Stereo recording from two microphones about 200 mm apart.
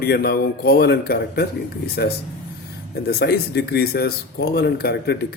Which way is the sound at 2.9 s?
55° left (ahead or behind).